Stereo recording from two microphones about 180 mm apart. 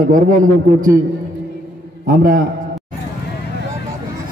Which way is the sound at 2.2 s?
50° right (ahead or behind).